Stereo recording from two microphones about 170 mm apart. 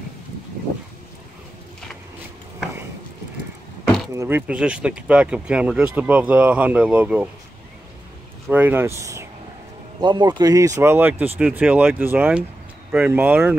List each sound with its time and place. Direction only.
4.1 s speech: 15° right (ahead or behind)
8.5 s speech: 10° right (ahead or behind)
10.0 s speech: 25° right (ahead or behind); by 13.6 s 10° right (ahead or behind)